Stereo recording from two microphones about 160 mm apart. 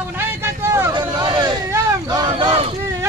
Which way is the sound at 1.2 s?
25° right (ahead or behind).